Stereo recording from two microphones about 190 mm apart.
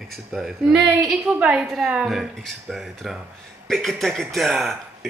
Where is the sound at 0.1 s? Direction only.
Centre (ahead or behind).